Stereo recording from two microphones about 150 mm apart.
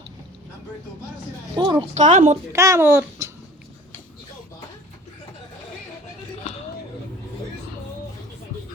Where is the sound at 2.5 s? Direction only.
20° right (ahead or behind).